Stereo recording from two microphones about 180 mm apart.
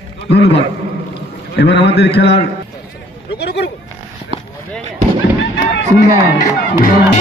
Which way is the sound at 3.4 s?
65° left (ahead or behind).